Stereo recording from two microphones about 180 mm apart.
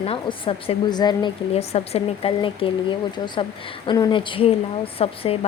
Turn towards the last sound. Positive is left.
turn(degrees=30)  # may be behind; listen again after turning